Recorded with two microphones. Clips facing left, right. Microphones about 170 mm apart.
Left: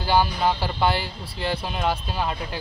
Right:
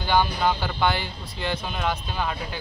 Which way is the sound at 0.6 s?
30° left (ahead or behind).